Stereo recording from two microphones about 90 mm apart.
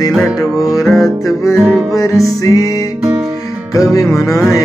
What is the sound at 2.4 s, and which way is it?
Music, 40° left (ahead or behind).